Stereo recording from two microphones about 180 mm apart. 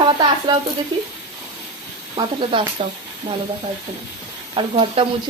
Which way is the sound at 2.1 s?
30° right (ahead or behind).